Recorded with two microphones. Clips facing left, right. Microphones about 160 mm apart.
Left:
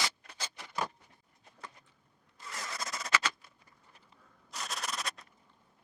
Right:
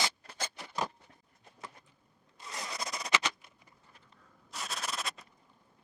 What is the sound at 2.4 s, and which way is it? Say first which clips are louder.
Zipper: right 1 dB; 20° right (ahead or behind).